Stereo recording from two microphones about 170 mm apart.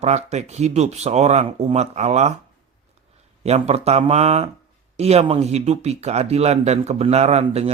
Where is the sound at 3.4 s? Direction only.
40° right (ahead or behind).